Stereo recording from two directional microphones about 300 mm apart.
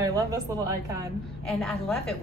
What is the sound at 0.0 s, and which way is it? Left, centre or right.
Speech, centre.